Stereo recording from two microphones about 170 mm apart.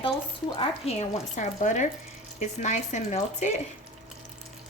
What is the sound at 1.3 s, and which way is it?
A woman's voice, 50° left (ahead or behind).